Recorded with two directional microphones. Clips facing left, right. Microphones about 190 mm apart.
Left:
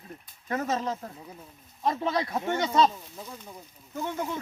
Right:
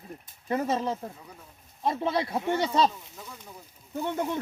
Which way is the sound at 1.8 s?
25° right (ahead or behind).